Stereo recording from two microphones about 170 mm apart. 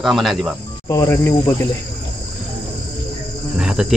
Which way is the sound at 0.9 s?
20° left (ahead or behind).